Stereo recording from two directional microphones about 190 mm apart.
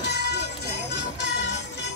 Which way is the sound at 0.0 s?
65° left (ahead or behind).